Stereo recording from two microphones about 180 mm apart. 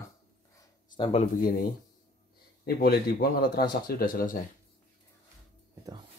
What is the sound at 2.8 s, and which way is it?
Speech, 60° left (ahead or behind).